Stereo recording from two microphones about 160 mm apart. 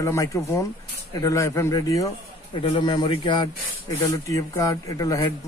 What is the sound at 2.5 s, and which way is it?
Speech, 35° left (ahead or behind).